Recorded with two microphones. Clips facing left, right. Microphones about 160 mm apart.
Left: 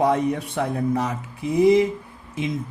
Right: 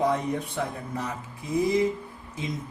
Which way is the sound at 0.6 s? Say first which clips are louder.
Left 7 dB; 85° left.